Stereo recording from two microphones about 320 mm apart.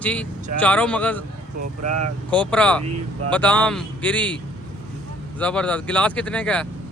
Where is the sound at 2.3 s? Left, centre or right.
Centre.